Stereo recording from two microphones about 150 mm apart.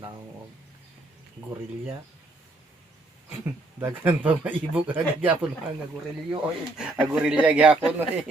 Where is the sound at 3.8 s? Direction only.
15° right (ahead or behind).